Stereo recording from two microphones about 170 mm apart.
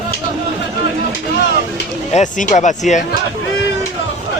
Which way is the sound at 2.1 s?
45° left (ahead or behind).